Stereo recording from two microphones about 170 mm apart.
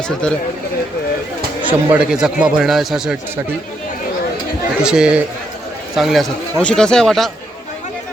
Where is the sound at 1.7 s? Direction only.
10° right (ahead or behind).